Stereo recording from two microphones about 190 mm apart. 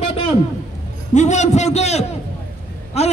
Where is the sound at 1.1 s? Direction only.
40° left (ahead or behind).